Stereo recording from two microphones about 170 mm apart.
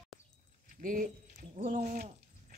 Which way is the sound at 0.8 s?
50° right (ahead or behind).